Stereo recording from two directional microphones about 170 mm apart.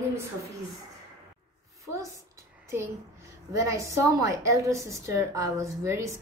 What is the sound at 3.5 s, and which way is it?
A woman's voice, 20° right (ahead or behind).